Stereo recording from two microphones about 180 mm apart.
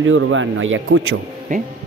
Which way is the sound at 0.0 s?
90° right.